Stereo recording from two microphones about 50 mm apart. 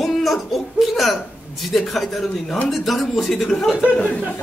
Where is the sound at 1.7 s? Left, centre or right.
Centre.